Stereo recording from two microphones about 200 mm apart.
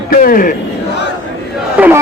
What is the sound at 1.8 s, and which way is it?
Chatter, 5° right (ahead or behind).